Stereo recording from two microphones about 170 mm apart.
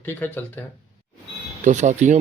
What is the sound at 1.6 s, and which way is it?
Speech, 45° right (ahead or behind).